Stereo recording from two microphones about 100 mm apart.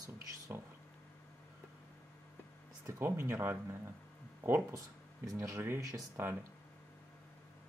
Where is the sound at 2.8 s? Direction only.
25° right (ahead or behind).